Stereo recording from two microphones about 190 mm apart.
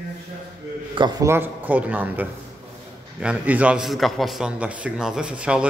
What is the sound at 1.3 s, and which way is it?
A man's voice, 10° right (ahead or behind).